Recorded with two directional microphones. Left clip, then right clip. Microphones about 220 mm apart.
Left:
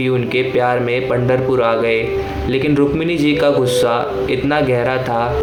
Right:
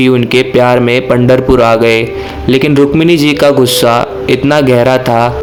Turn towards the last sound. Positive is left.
turn(degrees=-50)  # may be behind; listen again after turning